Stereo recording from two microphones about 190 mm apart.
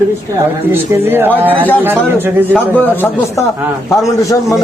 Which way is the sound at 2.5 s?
10° left (ahead or behind).